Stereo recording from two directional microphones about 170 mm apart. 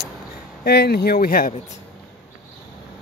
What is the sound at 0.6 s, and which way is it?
Speech, 70° left (ahead or behind).